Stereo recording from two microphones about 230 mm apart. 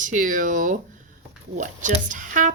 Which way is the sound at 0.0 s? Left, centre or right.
Right.